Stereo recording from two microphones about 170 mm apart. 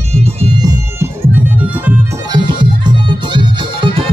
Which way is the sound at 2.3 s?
25° right (ahead or behind).